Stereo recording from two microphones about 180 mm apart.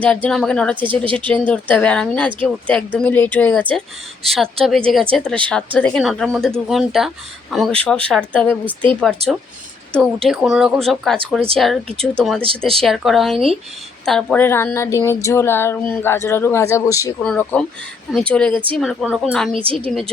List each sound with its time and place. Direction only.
0.0 s speech: 5° left (ahead or behind)
12.4 s speech: 30° right (ahead or behind)
12.8 s speech: centre (ahead or behind); by 17.2 s 15° left (ahead or behind)
17.2 s speech: 5° left (ahead or behind)